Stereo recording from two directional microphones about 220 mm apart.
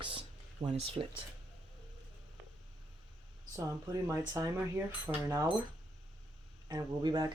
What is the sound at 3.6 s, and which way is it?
Speech, 15° right (ahead or behind).